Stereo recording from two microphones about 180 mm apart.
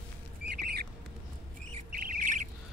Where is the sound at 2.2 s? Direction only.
45° right (ahead or behind).